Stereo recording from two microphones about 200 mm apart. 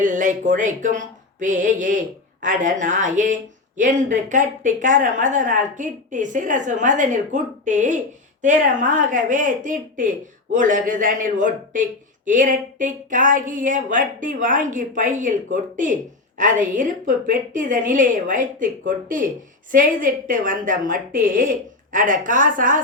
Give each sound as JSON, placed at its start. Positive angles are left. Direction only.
{"t": 0.0, "sound": "a woman's voice", "side_deg": -40}